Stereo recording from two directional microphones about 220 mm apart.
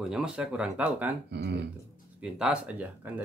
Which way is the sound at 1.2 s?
50° right (ahead or behind).